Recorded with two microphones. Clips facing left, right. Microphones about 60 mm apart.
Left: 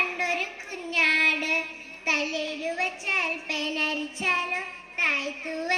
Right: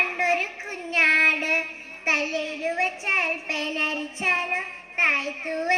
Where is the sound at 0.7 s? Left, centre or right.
Right.